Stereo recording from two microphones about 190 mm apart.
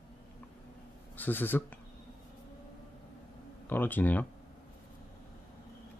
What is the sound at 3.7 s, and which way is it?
Speech, 10° left (ahead or behind).